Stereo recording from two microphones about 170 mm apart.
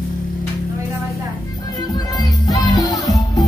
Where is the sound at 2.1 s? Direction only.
20° left (ahead or behind).